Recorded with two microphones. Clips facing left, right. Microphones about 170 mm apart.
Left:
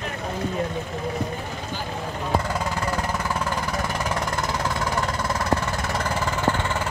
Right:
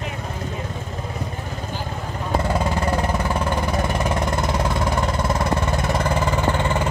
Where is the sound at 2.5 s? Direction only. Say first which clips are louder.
Right 4 dB; 25° right (ahead or behind).